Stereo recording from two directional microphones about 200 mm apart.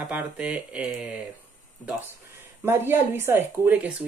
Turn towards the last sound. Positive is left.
turn(degrees=-5)  # may be behind; listen again after turning